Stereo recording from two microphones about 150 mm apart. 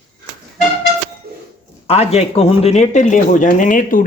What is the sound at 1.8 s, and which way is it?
Speech, 45° left (ahead or behind).